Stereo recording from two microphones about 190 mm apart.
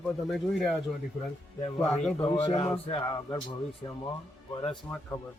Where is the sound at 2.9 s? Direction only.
25° left (ahead or behind).